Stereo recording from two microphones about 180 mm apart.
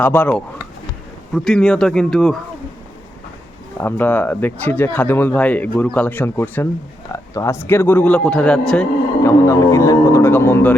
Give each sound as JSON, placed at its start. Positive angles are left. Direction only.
{"t": 0.0, "sound": "speech", "side_deg": 10}
{"t": 3.8, "sound": "speech", "side_deg": 10}
{"t": 9.2, "sound": "speech", "side_deg": 15}